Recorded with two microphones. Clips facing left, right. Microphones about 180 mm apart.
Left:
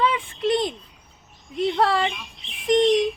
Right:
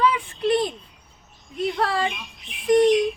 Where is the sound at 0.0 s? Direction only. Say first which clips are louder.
Right 1 dB; 25° left (ahead or behind).